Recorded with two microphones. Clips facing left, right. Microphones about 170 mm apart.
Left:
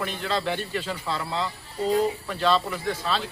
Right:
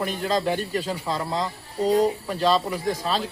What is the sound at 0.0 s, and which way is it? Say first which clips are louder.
Speech: right 4 dB; 40° right (ahead or behind).